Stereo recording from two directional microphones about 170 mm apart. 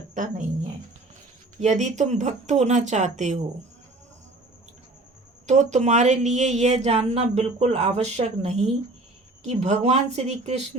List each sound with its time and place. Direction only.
0.1 s speech: 50° right (ahead or behind)
1.5 s speech: 45° right (ahead or behind)
5.5 s speech: 45° right (ahead or behind)